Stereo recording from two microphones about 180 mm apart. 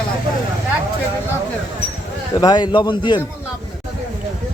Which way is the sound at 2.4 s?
25° left (ahead or behind).